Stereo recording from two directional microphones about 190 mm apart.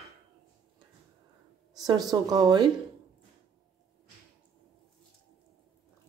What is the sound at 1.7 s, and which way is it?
Speech, 20° right (ahead or behind).